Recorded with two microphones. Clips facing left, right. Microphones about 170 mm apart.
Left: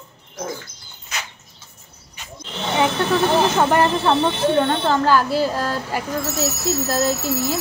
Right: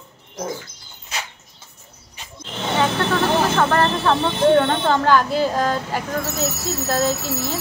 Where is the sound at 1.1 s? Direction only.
30° right (ahead or behind).